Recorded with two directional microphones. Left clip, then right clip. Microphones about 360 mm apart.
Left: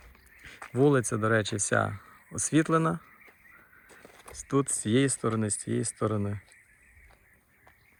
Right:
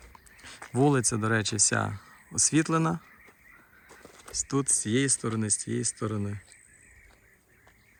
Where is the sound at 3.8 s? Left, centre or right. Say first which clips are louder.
Right 2 dB; centre.